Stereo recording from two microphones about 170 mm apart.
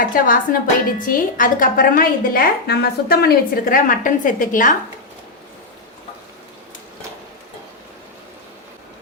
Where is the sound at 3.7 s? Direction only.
50° left (ahead or behind).